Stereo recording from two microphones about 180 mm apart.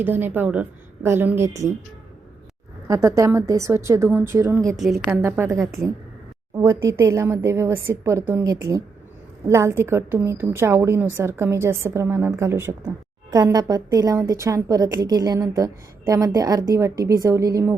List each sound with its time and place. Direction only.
0.0 s a woman's voice: 10° right (ahead or behind)
2.8 s a woman's voice: 20° right (ahead or behind)
4.6 s a woman's voice: centre (ahead or behind)
5.0 s a woman's voice: 15° right (ahead or behind)